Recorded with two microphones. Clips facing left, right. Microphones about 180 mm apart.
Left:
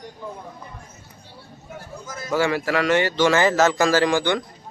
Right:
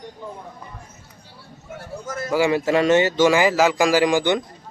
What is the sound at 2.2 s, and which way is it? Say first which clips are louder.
Speech: right 2 dB; 15° right (ahead or behind).